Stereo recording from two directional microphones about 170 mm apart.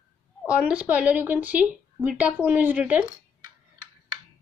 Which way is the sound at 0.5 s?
5° right (ahead or behind).